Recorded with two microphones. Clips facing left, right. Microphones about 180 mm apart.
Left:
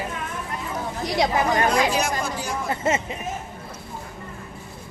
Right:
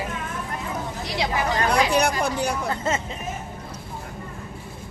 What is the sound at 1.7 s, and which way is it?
Speech, 60° right (ahead or behind).